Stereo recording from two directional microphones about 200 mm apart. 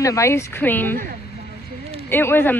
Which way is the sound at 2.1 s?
10° left (ahead or behind).